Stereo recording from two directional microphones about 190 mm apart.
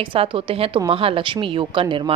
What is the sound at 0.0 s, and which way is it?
A woman's voice, 25° right (ahead or behind).